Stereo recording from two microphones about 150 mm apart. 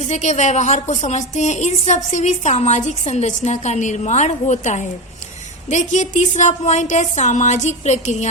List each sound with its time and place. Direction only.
0.0 s a woman's voice: 50° left (ahead or behind)